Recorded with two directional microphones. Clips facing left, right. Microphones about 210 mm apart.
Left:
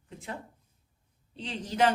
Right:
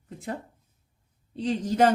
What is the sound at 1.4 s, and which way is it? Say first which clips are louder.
Speech: right 5 dB; 45° right (ahead or behind).